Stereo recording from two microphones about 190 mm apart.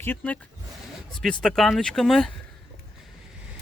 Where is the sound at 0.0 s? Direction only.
10° left (ahead or behind).